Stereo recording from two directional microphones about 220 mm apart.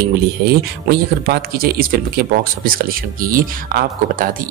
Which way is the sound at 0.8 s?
45° right (ahead or behind).